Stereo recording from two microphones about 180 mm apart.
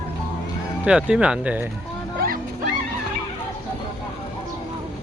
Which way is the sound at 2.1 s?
55° right (ahead or behind).